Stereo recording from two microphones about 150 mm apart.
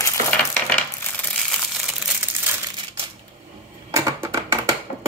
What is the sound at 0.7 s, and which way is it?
Coin, 10° left (ahead or behind).